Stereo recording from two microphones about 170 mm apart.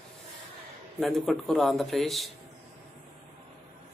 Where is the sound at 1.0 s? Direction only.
Centre (ahead or behind).